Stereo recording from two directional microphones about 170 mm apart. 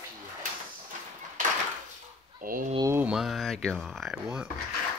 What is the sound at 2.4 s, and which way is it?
Speech, 55° right (ahead or behind).